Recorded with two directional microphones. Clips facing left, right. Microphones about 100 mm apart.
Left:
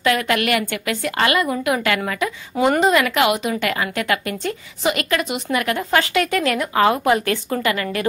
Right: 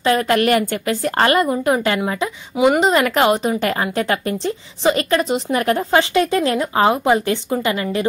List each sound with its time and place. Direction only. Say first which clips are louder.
0.0 s a woman's voice: right 3 dB; 35° right (ahead or behind)
2.5 s speech: right 3 dB; 10° right (ahead or behind)
2.8 s a woman's voice: right 1 dB; 35° right (ahead or behind)